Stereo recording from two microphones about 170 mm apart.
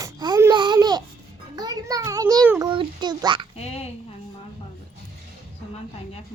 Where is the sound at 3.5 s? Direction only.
35° left (ahead or behind).